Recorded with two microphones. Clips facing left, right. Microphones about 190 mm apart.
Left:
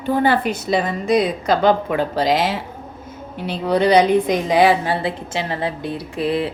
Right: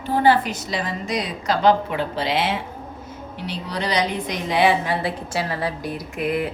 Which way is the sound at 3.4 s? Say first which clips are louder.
Left 10 dB; 55° left (ahead or behind).